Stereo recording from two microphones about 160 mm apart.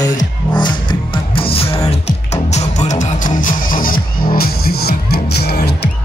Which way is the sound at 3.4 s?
60° left (ahead or behind).